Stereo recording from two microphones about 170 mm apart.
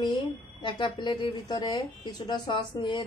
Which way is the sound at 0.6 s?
30° left (ahead or behind).